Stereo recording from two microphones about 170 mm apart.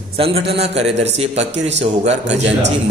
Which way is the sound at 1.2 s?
40° right (ahead or behind).